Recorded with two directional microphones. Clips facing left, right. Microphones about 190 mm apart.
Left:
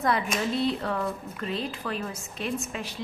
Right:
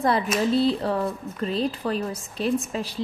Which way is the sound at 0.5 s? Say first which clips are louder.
Right 6 dB; 30° right (ahead or behind).